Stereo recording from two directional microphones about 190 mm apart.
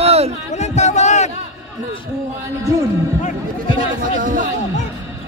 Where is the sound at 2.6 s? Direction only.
15° right (ahead or behind).